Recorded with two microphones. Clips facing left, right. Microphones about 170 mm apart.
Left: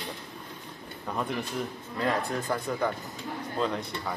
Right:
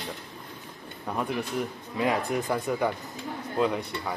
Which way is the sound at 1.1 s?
10° right (ahead or behind).